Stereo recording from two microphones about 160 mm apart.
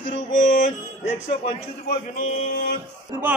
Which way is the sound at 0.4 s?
55° left (ahead or behind).